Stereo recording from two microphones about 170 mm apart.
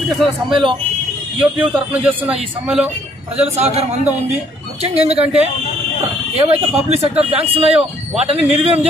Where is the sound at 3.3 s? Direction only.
40° right (ahead or behind).